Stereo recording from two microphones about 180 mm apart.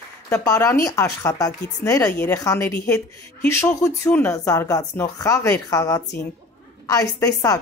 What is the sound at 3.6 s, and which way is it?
A woman's voice, 15° left (ahead or behind).